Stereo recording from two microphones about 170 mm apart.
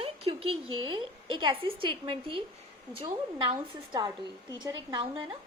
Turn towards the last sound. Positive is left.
turn(degrees=-25)  # may be behind; listen again after turning